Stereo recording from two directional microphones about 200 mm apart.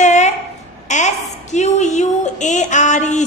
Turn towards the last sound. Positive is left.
turn(degrees=35)  # may be behind; listen again after turning